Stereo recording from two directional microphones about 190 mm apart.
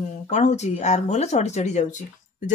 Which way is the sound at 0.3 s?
40° left (ahead or behind).